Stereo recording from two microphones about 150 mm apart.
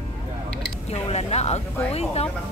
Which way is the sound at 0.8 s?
45° left (ahead or behind).